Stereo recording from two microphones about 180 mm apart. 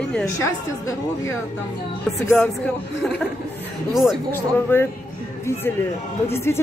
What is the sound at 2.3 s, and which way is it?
Speech, 5° left (ahead or behind).